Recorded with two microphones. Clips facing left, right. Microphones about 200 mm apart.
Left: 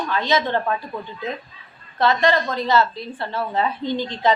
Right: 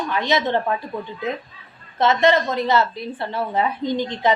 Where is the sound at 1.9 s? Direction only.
20° right (ahead or behind).